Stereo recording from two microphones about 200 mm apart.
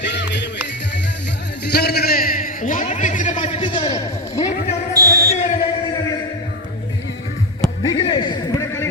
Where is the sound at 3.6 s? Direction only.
25° left (ahead or behind).